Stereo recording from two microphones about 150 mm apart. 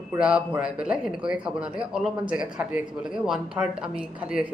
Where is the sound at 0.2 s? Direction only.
5° right (ahead or behind).